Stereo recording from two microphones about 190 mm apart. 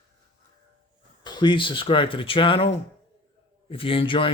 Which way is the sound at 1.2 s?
25° left (ahead or behind).